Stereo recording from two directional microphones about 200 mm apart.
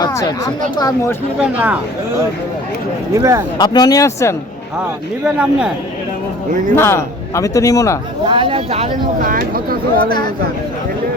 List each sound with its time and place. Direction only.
0.0 s speech: 15° left (ahead or behind)
1.4 s speech: 10° right (ahead or behind)
3.2 s speech: 15° right (ahead or behind)
3.6 s speech: 20° left (ahead or behind)
5.4 s speech: 5° right (ahead or behind)
6.7 s speech: 10° left (ahead or behind)
8.2 s speech: 25° right (ahead or behind)
9.3 s speech: 50° right (ahead or behind)
10.1 s speech: 20° left (ahead or behind)